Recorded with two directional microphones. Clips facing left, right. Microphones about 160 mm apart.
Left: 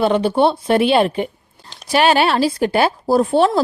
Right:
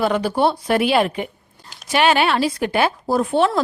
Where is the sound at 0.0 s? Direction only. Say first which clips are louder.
Left 3 dB; 25° left (ahead or behind).